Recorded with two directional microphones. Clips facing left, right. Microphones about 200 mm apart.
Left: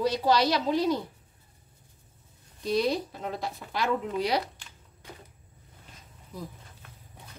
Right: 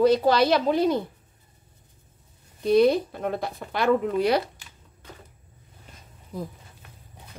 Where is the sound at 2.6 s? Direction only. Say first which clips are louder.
Right 8 dB; 55° right (ahead or behind).